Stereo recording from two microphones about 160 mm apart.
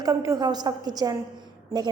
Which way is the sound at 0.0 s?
20° right (ahead or behind).